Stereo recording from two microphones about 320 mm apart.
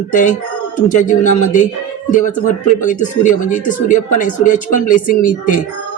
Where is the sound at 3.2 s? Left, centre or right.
Left.